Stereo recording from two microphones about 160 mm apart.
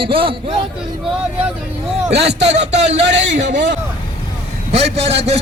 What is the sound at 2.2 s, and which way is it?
Speech, 45° right (ahead or behind).